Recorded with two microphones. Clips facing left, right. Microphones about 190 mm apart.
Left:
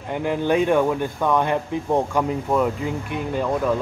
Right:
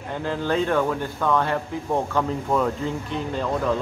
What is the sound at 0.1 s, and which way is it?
Speech, 15° left (ahead or behind).